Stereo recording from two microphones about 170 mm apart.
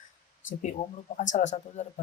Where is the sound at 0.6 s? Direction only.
45° left (ahead or behind).